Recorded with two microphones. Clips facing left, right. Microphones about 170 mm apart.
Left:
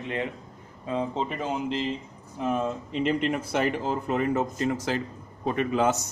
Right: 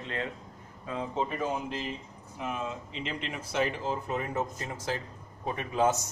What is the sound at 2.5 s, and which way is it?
Speech, 50° left (ahead or behind).